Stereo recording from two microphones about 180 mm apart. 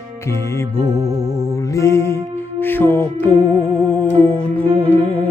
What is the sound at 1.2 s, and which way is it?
Music, 35° left (ahead or behind).